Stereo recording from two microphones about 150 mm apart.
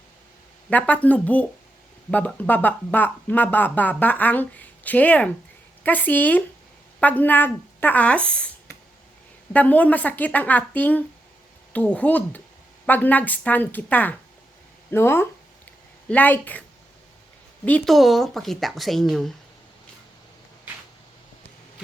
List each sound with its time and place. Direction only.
0.7 s speech: 10° left (ahead or behind)
9.5 s speech: 10° left (ahead or behind)
17.7 s speech: 5° left (ahead or behind)